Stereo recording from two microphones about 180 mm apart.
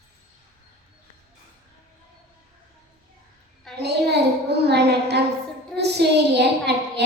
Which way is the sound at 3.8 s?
65° right (ahead or behind).